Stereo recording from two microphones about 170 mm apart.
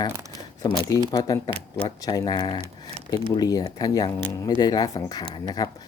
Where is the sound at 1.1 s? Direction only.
20° left (ahead or behind).